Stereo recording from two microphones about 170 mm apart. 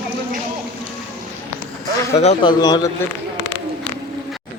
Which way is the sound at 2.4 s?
25° left (ahead or behind).